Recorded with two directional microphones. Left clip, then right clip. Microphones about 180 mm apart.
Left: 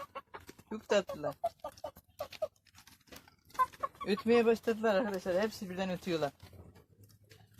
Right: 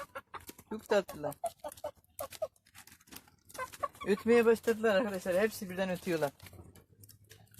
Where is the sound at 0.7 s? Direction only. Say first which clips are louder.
Even; 25° right (ahead or behind).